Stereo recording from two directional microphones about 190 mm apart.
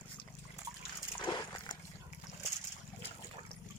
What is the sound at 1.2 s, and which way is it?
Dog, 20° left (ahead or behind).